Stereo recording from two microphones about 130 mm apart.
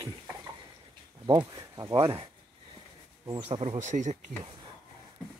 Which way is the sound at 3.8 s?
70° right (ahead or behind).